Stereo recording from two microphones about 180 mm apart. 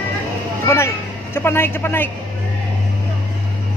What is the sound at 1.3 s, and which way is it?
Speech, 10° left (ahead or behind).